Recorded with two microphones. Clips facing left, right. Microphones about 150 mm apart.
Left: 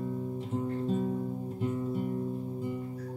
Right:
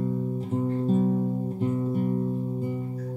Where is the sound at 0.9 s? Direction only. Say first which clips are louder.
Right 7 dB; 45° right (ahead or behind).